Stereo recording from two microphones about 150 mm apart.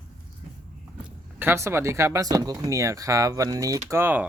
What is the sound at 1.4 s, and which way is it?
Speech, 15° right (ahead or behind).